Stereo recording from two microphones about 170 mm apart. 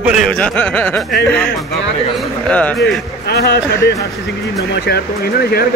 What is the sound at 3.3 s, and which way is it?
Speech, 75° left (ahead or behind).